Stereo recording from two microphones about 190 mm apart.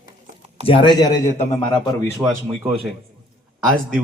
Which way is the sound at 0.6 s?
25° left (ahead or behind).